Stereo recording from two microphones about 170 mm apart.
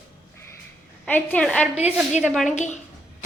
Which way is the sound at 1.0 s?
10° left (ahead or behind).